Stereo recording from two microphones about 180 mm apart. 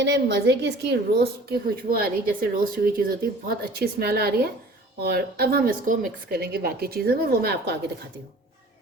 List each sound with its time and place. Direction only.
0.0 s a woman's voice: 70° right (ahead or behind)